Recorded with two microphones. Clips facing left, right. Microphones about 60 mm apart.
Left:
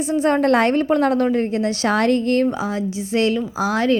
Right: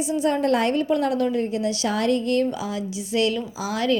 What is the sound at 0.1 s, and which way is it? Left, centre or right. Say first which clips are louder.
A woman's voice: left 5 dB; left.